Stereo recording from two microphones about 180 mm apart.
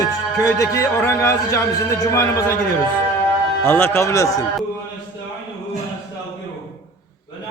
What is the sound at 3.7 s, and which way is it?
Speech, 10° left (ahead or behind).